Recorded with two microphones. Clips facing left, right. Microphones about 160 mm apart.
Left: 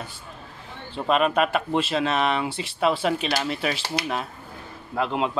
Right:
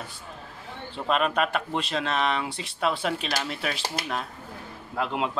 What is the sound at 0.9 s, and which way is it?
Speech, 5° left (ahead or behind).